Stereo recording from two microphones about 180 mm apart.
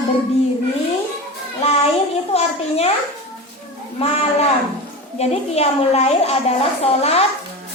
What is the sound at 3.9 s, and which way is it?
A woman's voice, 35° left (ahead or behind).